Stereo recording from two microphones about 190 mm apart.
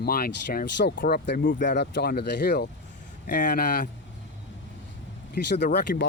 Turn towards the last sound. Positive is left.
turn(degrees=60)  # may be behind; listen again after turning